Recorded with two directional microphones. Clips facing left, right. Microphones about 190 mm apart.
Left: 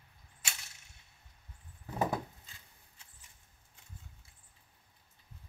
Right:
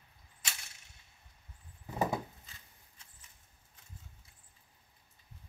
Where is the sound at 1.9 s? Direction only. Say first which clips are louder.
Even; centre (ahead or behind).